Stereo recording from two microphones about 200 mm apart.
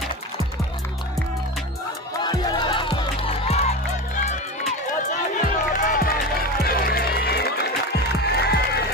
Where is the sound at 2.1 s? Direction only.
20° left (ahead or behind); by 7.7 s 55° left (ahead or behind).